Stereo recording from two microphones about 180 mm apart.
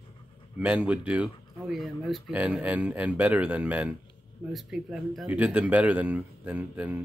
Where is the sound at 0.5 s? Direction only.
5° right (ahead or behind).